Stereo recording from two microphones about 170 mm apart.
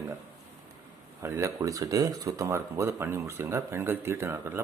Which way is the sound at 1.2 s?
15° right (ahead or behind).